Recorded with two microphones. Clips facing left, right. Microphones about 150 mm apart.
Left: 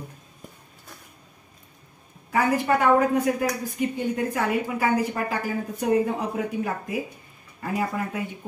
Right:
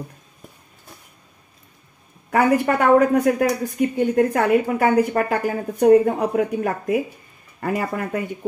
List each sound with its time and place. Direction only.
2.3 s a woman's voice: 60° right (ahead or behind)